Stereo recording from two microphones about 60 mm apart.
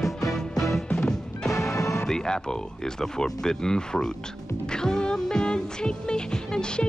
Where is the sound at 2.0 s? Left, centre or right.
Centre.